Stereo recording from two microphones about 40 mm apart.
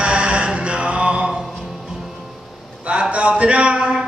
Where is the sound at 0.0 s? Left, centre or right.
Right.